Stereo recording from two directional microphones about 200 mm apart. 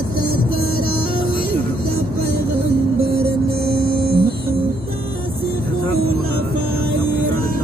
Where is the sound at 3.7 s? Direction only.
50° right (ahead or behind).